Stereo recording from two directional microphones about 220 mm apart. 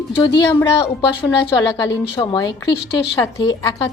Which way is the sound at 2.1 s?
20° left (ahead or behind).